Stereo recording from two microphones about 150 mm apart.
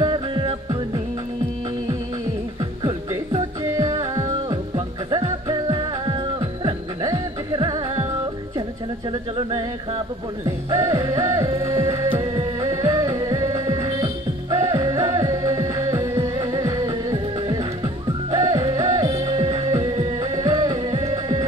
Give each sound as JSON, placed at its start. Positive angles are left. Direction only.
{"t": 0.0, "sound": "music", "side_deg": -30}
{"t": 3.7, "sound": "music", "side_deg": -20}
{"t": 10.4, "sound": "music", "side_deg": -20}
{"t": 18.5, "sound": "music", "side_deg": -20}
{"t": 20.3, "sound": "music", "side_deg": -25}